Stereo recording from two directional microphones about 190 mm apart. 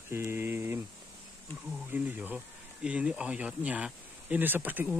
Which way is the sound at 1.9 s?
10° right (ahead or behind).